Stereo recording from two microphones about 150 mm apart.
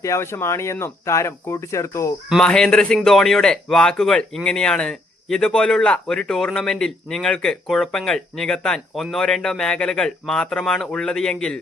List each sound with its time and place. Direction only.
0.0 s speech: 20° left (ahead or behind)
2.3 s speech: 5° left (ahead or behind)